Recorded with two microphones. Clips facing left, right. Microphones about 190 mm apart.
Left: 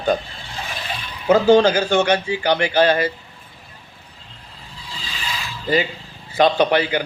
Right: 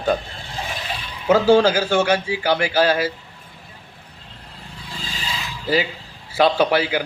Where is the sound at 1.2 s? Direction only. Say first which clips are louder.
Left 1 dB; 5° right (ahead or behind).